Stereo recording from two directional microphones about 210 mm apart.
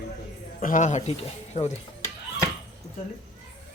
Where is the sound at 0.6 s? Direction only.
40° left (ahead or behind).